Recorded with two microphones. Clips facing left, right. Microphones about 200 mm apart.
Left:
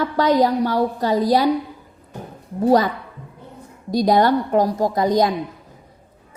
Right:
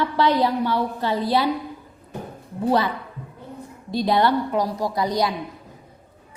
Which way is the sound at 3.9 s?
40° left (ahead or behind).